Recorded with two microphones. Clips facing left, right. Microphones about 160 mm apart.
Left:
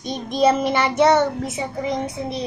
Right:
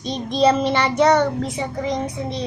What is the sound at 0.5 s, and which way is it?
Child singing, 10° left (ahead or behind).